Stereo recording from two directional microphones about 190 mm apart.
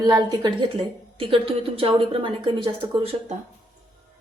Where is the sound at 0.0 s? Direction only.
20° right (ahead or behind).